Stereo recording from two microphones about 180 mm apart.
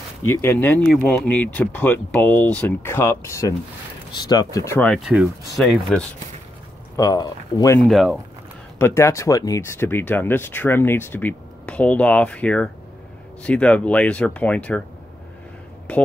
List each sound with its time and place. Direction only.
0.4 s speech: 10° left (ahead or behind)
7.0 s speech: 20° left (ahead or behind)
7.9 s speech: centre (ahead or behind)
8.7 s speech: 15° left (ahead or behind)
15.9 s speech: 5° left (ahead or behind)